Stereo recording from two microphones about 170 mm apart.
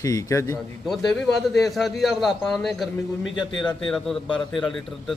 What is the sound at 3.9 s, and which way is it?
Speech, centre (ahead or behind).